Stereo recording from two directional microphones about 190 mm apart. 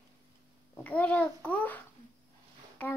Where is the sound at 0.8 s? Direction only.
10° left (ahead or behind).